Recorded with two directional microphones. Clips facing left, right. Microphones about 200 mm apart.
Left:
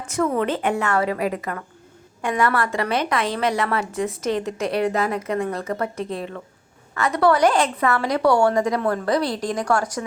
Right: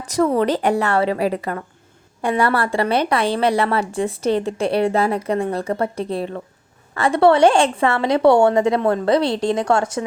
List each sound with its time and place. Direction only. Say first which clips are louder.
0.0 s a woman's voice: right 4 dB; 35° right (ahead or behind)